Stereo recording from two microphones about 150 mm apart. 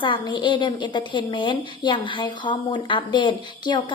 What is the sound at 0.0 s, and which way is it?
A woman's voice, 30° left (ahead or behind).